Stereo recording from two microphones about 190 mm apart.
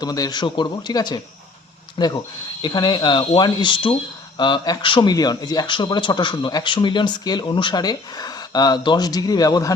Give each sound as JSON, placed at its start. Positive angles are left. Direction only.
{"t": 0.0, "sound": "speech", "side_deg": 20}